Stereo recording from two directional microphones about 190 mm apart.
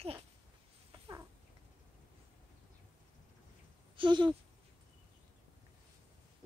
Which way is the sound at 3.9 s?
25° right (ahead or behind).